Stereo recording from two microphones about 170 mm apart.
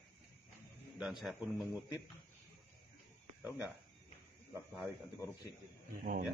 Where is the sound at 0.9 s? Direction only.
5° right (ahead or behind).